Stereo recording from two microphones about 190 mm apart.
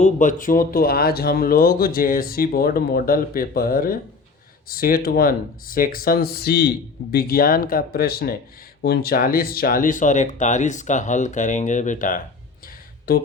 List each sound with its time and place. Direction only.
0.0 s speech: 40° left (ahead or behind)